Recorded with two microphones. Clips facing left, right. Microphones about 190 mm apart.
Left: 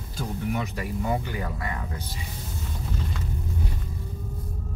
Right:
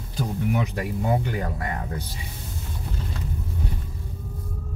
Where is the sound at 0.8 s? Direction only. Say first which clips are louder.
Right 3 dB; 55° right (ahead or behind).